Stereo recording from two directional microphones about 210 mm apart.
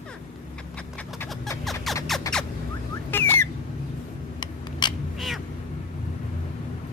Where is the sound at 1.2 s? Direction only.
5° left (ahead or behind).